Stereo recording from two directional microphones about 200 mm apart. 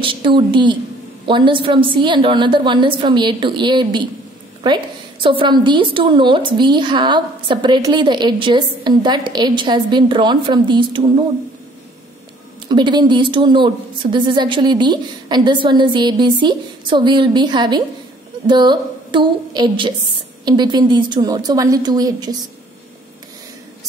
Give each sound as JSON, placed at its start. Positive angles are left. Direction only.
{"t": 0.0, "sound": "a sound", "side_deg": -25}
{"t": 0.5, "sound": "a woman's voice", "side_deg": -25}
{"t": 12.6, "sound": "a woman's voice", "side_deg": -20}